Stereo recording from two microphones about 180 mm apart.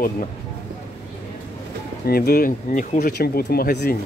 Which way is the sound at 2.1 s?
55° left (ahead or behind).